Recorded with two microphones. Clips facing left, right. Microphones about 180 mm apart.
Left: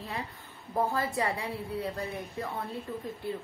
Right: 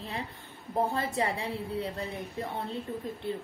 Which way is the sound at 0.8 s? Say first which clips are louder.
Even; 25° right (ahead or behind).